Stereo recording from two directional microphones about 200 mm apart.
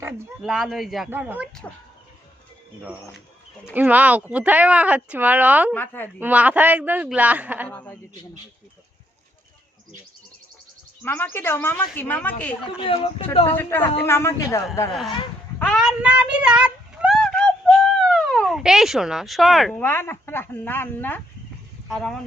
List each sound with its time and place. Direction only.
0.0 s speech: 5° right (ahead or behind)
3.8 s speech: 10° right (ahead or behind)
5.7 s speech: 10° left (ahead or behind)
6.1 s speech: 10° right (ahead or behind)
7.7 s speech: 10° left (ahead or behind)
11.0 s speech: 10° left (ahead or behind)
12.8 s speech: 25° left (ahead or behind)
13.6 s speech: 10° left (ahead or behind)